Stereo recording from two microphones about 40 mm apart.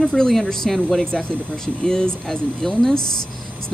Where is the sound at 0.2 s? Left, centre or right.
Centre.